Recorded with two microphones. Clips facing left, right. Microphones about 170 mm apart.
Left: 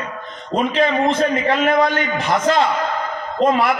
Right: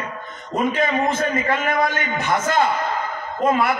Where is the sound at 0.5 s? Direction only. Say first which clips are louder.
Left 3 dB; 30° left (ahead or behind).